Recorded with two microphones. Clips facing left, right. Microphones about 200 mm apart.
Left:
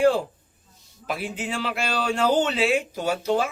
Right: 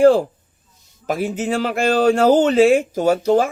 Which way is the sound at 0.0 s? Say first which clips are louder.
Right 7 dB; 40° right (ahead or behind).